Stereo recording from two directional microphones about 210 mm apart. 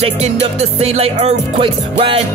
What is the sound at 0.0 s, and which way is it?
Music, 30° right (ahead or behind).